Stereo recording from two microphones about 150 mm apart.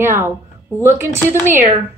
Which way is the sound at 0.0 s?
15° right (ahead or behind).